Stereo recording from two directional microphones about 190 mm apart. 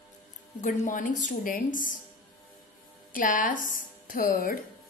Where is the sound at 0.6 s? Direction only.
40° left (ahead or behind).